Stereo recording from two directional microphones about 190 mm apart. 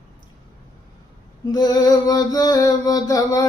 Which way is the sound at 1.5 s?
20° left (ahead or behind).